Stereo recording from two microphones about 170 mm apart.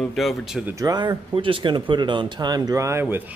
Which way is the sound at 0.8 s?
20° right (ahead or behind).